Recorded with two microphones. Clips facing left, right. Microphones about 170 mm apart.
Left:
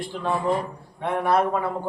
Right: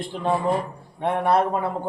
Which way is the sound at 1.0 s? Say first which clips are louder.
Right 1 dB; 30° right (ahead or behind).